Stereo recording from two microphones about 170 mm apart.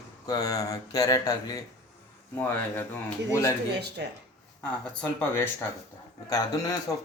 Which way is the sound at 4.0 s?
90° right.